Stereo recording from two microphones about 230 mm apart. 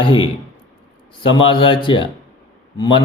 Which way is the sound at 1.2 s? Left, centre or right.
Left.